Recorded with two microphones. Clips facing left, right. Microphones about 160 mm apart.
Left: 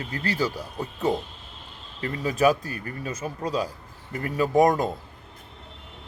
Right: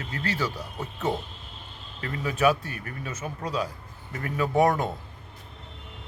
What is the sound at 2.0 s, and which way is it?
Speech, 35° left (ahead or behind).